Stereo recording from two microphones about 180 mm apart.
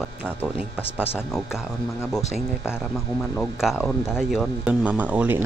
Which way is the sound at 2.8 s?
Centre (ahead or behind).